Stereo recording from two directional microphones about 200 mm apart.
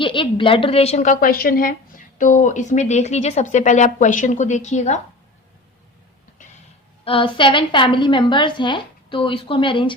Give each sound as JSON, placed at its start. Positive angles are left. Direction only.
{"t": 0.0, "sound": "speech", "side_deg": 25}
{"t": 7.0, "sound": "a woman's voice", "side_deg": 25}